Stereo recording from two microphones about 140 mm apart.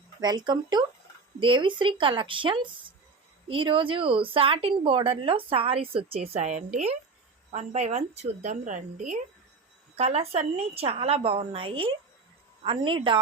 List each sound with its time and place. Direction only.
0.2 s a woman's voice: 30° right (ahead or behind); by 9.2 s 60° right (ahead or behind)
9.9 s a woman's voice: 50° right (ahead or behind)